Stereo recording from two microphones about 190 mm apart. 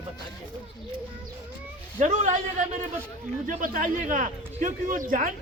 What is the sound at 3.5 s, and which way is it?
Speech, 45° right (ahead or behind).